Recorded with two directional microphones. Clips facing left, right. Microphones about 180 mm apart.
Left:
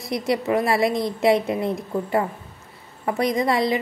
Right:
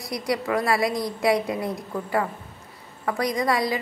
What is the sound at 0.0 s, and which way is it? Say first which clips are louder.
A woman's voice: left 3 dB; 25° left (ahead or behind).